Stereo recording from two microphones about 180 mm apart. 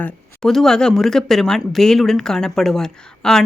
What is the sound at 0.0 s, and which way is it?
Speech, centre (ahead or behind).